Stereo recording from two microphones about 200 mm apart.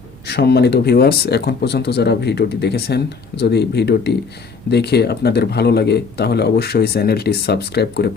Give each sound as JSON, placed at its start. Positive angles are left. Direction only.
{"t": 0.3, "sound": "speech", "side_deg": 55}